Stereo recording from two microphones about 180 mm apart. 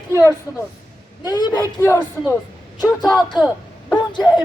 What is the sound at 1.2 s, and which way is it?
Speech, 20° left (ahead or behind).